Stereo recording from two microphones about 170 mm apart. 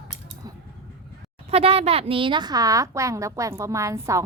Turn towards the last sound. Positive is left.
turn(degrees=-20)  # may be behind; listen again after turning